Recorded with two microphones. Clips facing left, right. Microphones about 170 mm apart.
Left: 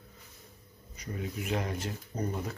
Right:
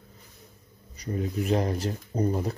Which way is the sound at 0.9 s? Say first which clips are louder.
Right 8 dB; 35° right (ahead or behind).